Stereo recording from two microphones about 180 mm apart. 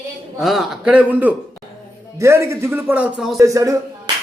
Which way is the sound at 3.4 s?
20° right (ahead or behind).